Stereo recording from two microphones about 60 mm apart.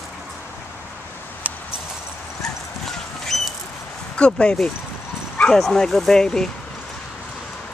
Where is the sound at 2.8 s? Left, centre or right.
Centre.